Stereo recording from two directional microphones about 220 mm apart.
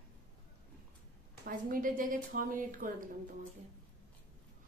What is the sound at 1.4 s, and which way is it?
A woman's voice, 40° right (ahead or behind).